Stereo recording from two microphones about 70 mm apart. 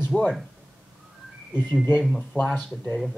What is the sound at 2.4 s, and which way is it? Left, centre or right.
Speech, centre.